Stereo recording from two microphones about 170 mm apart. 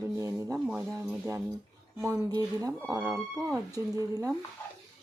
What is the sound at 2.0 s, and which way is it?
Speech, 20° right (ahead or behind).